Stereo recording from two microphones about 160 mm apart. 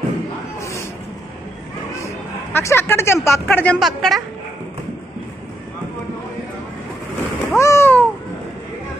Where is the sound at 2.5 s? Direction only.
15° left (ahead or behind); by 4.2 s centre (ahead or behind).